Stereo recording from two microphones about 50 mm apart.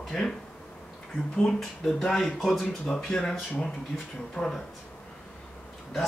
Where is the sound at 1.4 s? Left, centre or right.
Centre.